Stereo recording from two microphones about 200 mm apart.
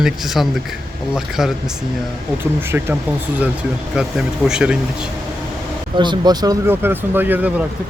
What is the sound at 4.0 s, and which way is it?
A man's voice, 5° right (ahead or behind).